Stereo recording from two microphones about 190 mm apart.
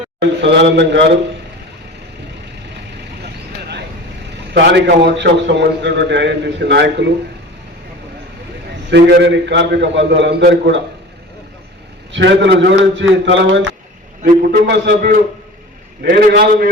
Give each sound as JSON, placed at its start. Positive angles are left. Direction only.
{"t": 0.2, "sound": "a man's voice", "side_deg": -65}
{"t": 4.5, "sound": "a man's voice", "side_deg": -60}
{"t": 8.9, "sound": "a man's voice", "side_deg": -65}
{"t": 12.1, "sound": "a man's voice", "side_deg": -70}
{"t": 14.2, "sound": "a man's voice", "side_deg": -50}